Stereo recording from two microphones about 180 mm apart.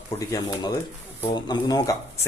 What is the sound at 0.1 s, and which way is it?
Speech, 20° left (ahead or behind).